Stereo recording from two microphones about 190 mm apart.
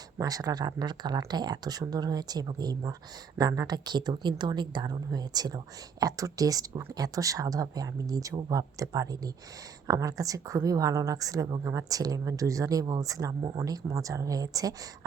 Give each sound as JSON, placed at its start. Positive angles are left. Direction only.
{"t": 0.2, "sound": "speech", "side_deg": -20}